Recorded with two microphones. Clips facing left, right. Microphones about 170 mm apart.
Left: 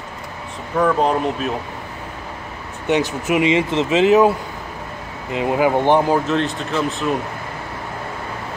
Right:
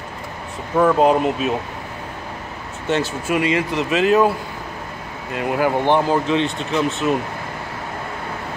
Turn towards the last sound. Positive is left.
turn(degrees=0)  # may be behind; listen again after turning